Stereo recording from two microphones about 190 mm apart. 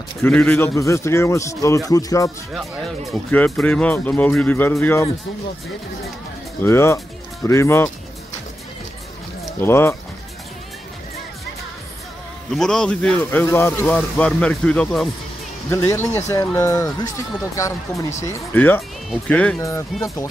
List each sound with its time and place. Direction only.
0.2 s speech: 10° left (ahead or behind)
3.1 s speech: 5° left (ahead or behind)
6.6 s speech: 15° left (ahead or behind)
9.6 s speech: 10° left (ahead or behind)
12.5 s speech: 5° left (ahead or behind)
15.7 s speech: 15° left (ahead or behind)
18.2 s speech: 10° left (ahead or behind)